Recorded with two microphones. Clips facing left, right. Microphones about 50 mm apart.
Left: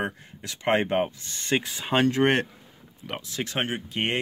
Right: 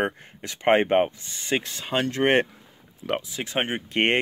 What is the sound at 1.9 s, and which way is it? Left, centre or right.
Speech, centre.